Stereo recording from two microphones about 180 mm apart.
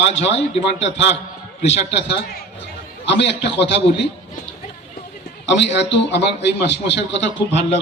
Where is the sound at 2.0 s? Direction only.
70° left (ahead or behind).